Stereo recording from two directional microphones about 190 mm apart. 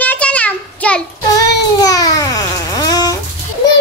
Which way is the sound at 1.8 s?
20° left (ahead or behind).